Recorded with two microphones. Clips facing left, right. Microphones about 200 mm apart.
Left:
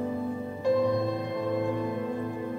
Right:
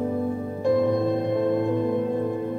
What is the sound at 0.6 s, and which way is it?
Music, 55° right (ahead or behind).